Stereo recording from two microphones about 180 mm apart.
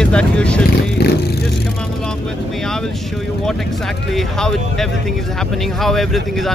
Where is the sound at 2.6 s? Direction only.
Centre (ahead or behind).